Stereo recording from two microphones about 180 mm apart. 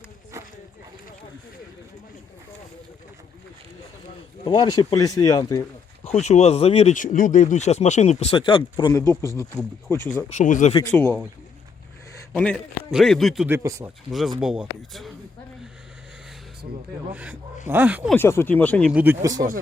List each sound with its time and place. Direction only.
4.4 s speech: 25° left (ahead or behind)
6.1 s speech: 40° left (ahead or behind)
9.0 s speech: 15° left (ahead or behind)
10.2 s speech: 45° left (ahead or behind)
10.9 s speech: 10° left (ahead or behind)
12.3 s a man's voice: centre (ahead or behind)
13.5 s speech: 15° right (ahead or behind)
14.1 s a man's voice: centre (ahead or behind)
17.1 s speech: 10° right (ahead or behind)
18.1 s speech: 15° left (ahead or behind)
18.9 s speech: 5° right (ahead or behind)
19.2 s speech: 20° right (ahead or behind)